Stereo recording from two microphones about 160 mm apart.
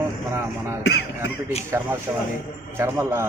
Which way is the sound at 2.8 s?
15° right (ahead or behind).